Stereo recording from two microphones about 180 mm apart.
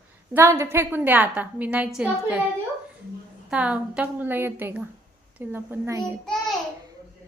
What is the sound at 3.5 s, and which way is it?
A woman's voice, 5° right (ahead or behind).